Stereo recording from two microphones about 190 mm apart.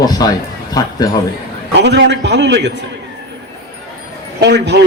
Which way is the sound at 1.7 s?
65° right (ahead or behind).